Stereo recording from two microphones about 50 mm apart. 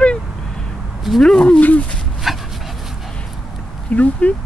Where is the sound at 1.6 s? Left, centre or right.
Left.